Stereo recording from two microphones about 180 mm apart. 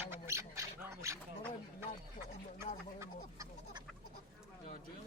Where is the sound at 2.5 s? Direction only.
15° right (ahead or behind).